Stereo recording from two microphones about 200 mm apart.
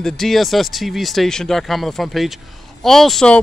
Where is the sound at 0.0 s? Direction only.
Centre (ahead or behind).